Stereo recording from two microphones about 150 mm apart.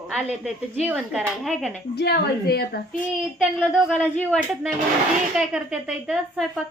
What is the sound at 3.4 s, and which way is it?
Speech, 5° right (ahead or behind).